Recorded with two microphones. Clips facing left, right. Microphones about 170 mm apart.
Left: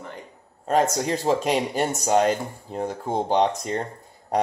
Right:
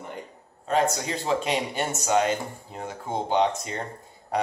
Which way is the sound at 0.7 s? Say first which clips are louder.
Left 3 dB; 45° left (ahead or behind).